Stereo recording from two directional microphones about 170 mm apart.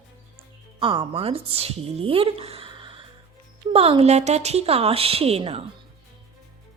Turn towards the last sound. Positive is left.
turn(degrees=-35)  # may be behind; listen again after turning